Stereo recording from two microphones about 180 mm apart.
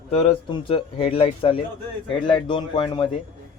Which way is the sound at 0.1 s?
35° left (ahead or behind).